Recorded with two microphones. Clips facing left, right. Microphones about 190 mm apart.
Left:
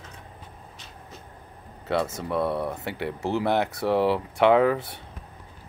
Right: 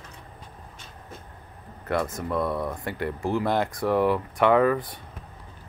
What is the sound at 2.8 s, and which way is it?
Speech, 70° left (ahead or behind).